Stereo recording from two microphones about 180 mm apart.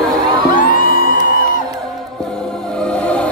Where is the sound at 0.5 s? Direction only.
50° left (ahead or behind).